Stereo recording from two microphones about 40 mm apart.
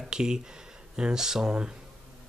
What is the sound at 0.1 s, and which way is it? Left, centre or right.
Speech, centre.